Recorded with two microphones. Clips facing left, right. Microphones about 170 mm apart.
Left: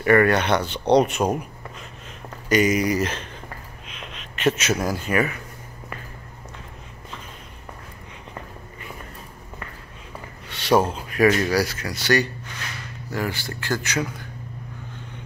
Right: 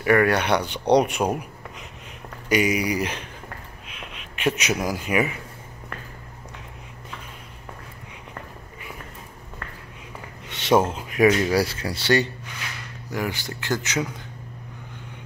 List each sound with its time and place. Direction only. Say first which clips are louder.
0.0 s speech: left 2 dB; 5° right (ahead or behind)
3.8 s a sound: left 1 dB; 5° right (ahead or behind)
4.7 s speech: left 1 dB; 10° right (ahead or behind)
10.5 s speech: even; 20° right (ahead or behind)
13.1 s speech: left 1 dB; 15° right (ahead or behind)